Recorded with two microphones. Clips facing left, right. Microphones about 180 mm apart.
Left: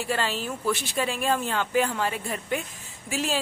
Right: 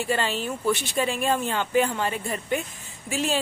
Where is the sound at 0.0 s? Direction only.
Centre (ahead or behind).